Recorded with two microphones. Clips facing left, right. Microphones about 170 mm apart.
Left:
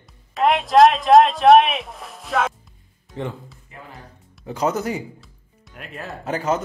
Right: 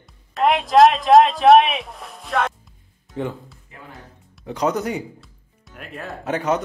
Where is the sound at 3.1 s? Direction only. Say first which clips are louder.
Right 2 dB; centre (ahead or behind).